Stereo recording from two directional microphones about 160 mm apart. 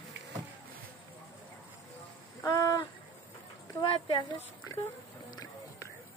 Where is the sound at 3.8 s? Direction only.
30° left (ahead or behind).